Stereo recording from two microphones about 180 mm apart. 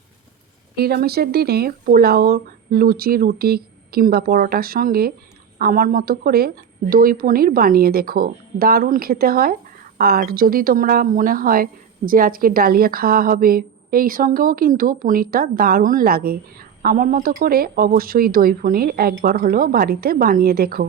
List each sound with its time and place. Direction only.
0.8 s speech: 60° right (ahead or behind)